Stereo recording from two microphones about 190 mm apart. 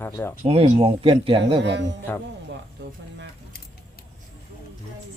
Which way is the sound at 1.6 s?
65° right (ahead or behind).